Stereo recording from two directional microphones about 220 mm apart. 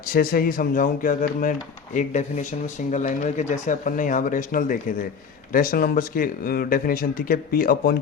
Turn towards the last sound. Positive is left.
turn(degrees=40)  # may be behind; listen again after turning